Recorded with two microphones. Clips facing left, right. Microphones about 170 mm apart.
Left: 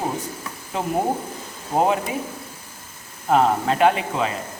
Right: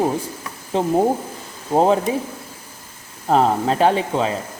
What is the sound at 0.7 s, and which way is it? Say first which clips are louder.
Speech: right 6 dB; 30° right (ahead or behind).